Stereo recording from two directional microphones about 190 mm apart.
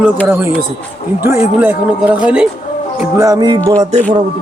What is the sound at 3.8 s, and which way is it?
Music, 35° right (ahead or behind).